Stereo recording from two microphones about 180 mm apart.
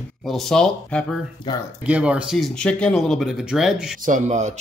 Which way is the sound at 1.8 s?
5° right (ahead or behind).